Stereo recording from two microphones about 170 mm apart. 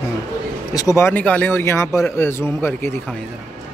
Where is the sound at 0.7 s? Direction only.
20° left (ahead or behind).